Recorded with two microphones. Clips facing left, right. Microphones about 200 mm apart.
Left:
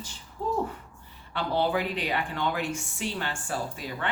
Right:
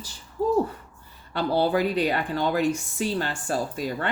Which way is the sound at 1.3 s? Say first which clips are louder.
Right 4 dB; 40° right (ahead or behind).